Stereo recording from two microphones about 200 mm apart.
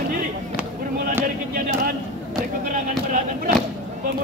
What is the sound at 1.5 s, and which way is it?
Speech, 45° right (ahead or behind).